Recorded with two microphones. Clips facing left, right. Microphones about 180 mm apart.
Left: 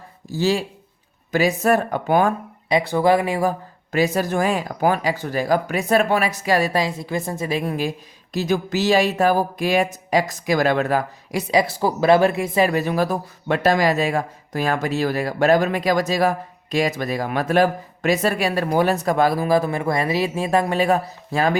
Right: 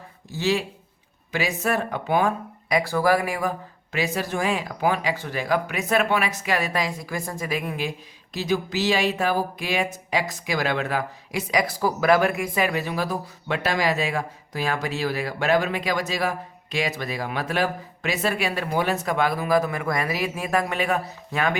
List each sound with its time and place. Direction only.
0.3 s speech: 35° left (ahead or behind)
2.6 s speech: 25° left (ahead or behind)
3.9 s speech: 40° left (ahead or behind)
11.5 s speech: 25° left (ahead or behind)
12.7 s speech: 45° left (ahead or behind)